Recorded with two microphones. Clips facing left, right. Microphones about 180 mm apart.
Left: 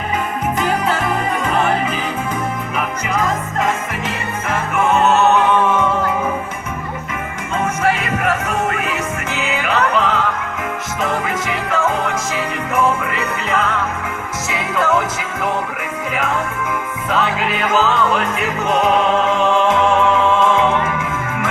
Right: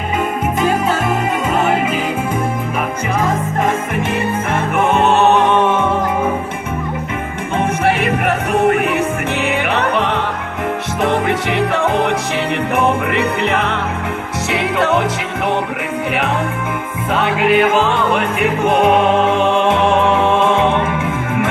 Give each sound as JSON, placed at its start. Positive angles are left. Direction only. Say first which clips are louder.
{"t": 4.5, "sound": "music", "louder": "even", "side_deg": -30}
{"t": 8.8, "sound": "music", "louder": "right 6 dB", "side_deg": -60}
{"t": 11.3, "sound": "music", "louder": "right 5 dB", "side_deg": -65}
{"t": 17.1, "sound": "music", "louder": "right 5 dB", "side_deg": -60}